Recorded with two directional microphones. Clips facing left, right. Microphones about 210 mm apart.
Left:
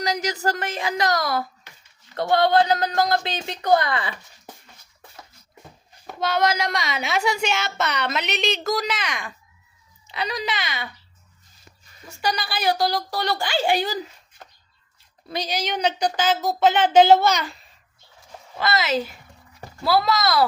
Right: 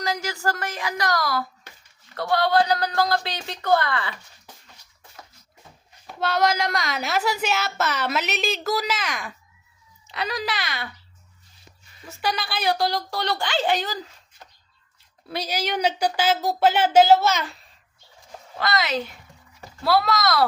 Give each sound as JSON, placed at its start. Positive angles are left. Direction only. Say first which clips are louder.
{"t": 0.0, "sound": "a woman's voice", "louder": "left 2 dB", "side_deg": 20}
{"t": 6.1, "sound": "a woman's voice", "louder": "even", "side_deg": 0}
{"t": 12.0, "sound": "a woman's voice", "louder": "left 1 dB", "side_deg": 0}
{"t": 15.3, "sound": "speech", "louder": "even", "side_deg": -10}
{"t": 18.6, "sound": "a woman's voice", "louder": "left 2 dB", "side_deg": 0}